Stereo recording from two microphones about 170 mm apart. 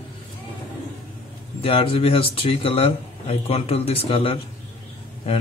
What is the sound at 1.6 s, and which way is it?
Speech, 35° left (ahead or behind).